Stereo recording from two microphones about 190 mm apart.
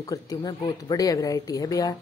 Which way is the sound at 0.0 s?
20° left (ahead or behind).